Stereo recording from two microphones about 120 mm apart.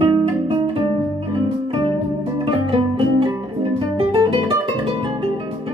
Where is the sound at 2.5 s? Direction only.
45° right (ahead or behind).